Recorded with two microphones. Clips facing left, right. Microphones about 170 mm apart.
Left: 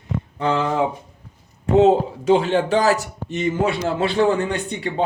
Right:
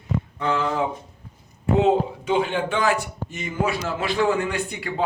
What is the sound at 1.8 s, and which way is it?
A man's voice, 40° left (ahead or behind).